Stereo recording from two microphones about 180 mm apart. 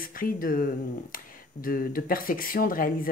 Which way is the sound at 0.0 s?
50° left (ahead or behind).